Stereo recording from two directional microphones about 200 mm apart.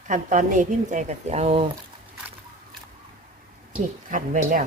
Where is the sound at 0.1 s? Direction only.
40° right (ahead or behind).